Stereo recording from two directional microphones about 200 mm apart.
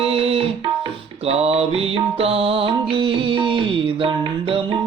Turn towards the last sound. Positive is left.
turn(degrees=-25)  # may be behind; listen again after turning